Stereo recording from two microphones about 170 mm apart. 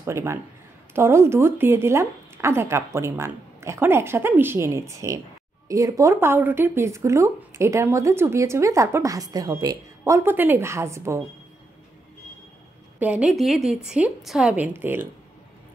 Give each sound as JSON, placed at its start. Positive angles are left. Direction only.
{"t": 0.0, "sound": "speech", "side_deg": -15}
{"t": 13.0, "sound": "a woman's voice", "side_deg": -5}